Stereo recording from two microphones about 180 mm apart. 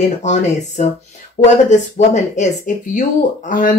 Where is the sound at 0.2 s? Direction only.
40° left (ahead or behind).